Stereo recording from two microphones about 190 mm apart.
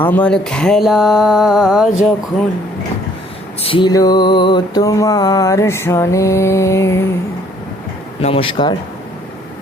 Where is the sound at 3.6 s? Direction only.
25° left (ahead or behind).